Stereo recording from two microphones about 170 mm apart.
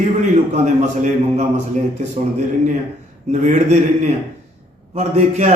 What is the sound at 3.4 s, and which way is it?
A man's voice, 45° right (ahead or behind).